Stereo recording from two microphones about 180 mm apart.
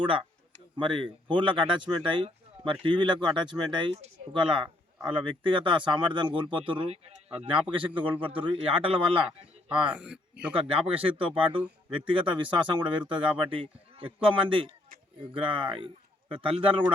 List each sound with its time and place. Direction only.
0.0 s a man's voice: 30° right (ahead or behind)
9.9 s speech: 5° right (ahead or behind)
10.5 s a man's voice: 30° right (ahead or behind)